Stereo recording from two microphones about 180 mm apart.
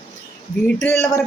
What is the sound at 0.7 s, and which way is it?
Speech, 10° left (ahead or behind).